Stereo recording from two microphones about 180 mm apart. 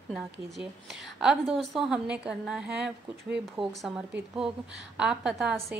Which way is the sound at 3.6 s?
30° right (ahead or behind).